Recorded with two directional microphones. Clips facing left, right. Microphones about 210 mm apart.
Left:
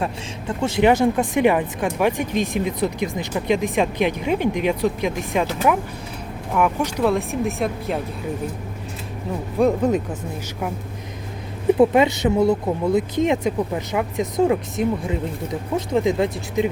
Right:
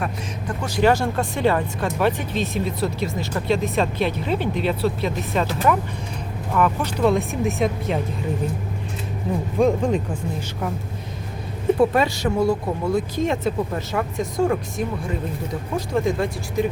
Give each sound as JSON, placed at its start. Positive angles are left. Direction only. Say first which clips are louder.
{"t": 0.0, "sound": "speech", "louder": "left 1 dB", "side_deg": 25}
{"t": 7.1, "sound": "speech", "louder": "even", "side_deg": 0}
{"t": 9.6, "sound": "speech", "louder": "left 2 dB", "side_deg": 5}
{"t": 11.8, "sound": "speech", "louder": "left 4 dB", "side_deg": 20}